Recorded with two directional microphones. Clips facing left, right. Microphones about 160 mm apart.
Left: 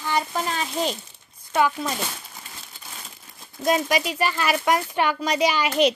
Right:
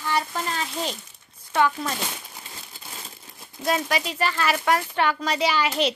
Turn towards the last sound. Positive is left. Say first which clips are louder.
# left 3 dB
turn(degrees=15)  # may be behind; listen again after turning